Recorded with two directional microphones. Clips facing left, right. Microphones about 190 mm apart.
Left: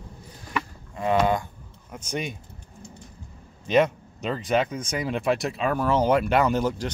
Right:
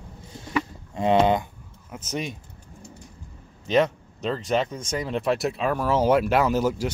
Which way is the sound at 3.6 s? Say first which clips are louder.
Left 1 dB; 5° left (ahead or behind).